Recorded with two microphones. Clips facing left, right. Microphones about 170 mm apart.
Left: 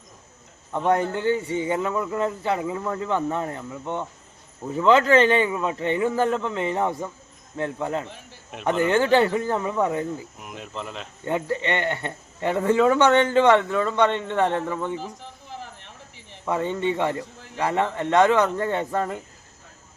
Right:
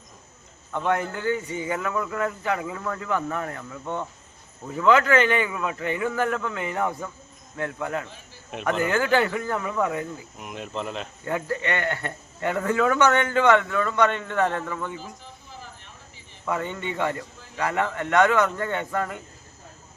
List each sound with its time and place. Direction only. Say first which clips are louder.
0.7 s speech: left 3 dB; 30° left (ahead or behind)
10.3 s speech: right 3 dB; centre (ahead or behind)
11.3 s speech: left 3 dB; 25° left (ahead or behind)
15.2 s a sound: left 5 dB; 70° left (ahead or behind)
16.5 s speech: left 5 dB; 25° left (ahead or behind)